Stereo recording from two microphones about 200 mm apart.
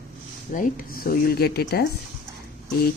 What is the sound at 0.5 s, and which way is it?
Speech, 40° left (ahead or behind).